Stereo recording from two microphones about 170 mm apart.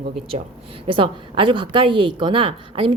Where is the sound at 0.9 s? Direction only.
30° right (ahead or behind).